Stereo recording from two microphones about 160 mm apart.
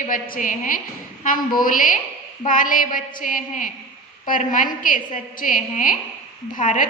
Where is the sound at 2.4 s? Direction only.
55° left (ahead or behind).